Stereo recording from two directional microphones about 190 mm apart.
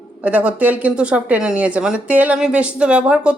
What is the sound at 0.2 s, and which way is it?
Speech, 10° right (ahead or behind).